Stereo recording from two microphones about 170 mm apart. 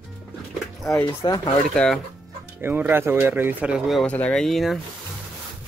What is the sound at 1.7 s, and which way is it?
Speech, 5° left (ahead or behind).